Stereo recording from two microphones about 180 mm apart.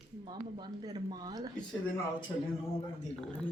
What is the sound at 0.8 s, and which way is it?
Speech, 20° right (ahead or behind).